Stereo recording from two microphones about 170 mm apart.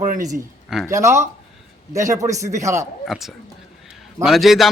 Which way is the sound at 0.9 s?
15° right (ahead or behind).